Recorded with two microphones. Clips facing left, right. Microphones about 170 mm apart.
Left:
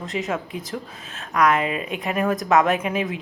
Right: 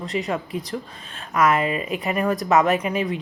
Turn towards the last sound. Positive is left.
turn(degrees=0)  # may be behind; listen again after turning